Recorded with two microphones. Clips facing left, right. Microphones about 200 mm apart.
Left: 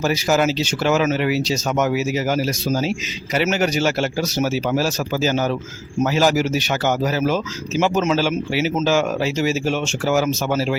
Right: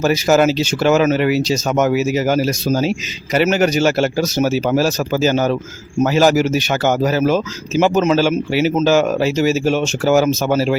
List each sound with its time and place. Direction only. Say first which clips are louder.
0.0 s speech: right 5 dB; 50° right (ahead or behind)